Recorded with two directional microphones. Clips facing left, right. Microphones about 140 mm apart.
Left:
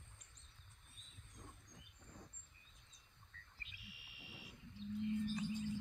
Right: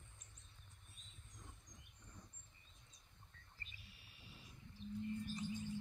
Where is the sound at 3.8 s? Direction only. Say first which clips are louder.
Left 4 dB; 85° left.